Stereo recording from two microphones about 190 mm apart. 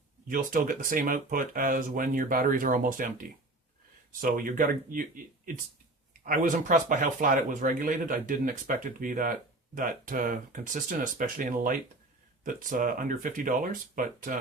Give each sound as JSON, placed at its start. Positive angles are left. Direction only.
{"t": 0.3, "sound": "speech", "side_deg": -45}
{"t": 6.2, "sound": "speech", "side_deg": -45}